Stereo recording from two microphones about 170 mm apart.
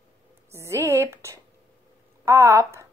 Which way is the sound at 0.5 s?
15° right (ahead or behind).